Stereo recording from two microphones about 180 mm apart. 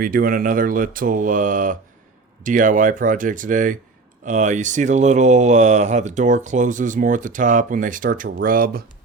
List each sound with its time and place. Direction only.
0.0 s speech: 55° right (ahead or behind)